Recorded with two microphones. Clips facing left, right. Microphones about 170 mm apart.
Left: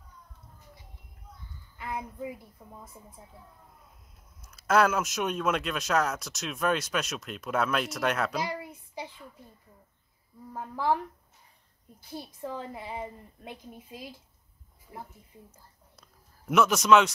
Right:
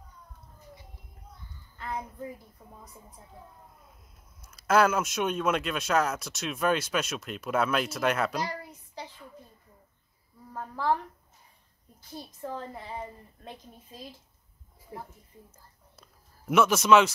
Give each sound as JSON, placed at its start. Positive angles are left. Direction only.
{"t": 1.8, "sound": "a woman's voice", "side_deg": 10}
{"t": 4.4, "sound": "speech", "side_deg": 0}
{"t": 8.4, "sound": "a sound", "side_deg": 10}
{"t": 10.5, "sound": "a woman's voice", "side_deg": 10}
{"t": 12.4, "sound": "a woman's voice", "side_deg": 10}
{"t": 16.0, "sound": "a sound", "side_deg": 0}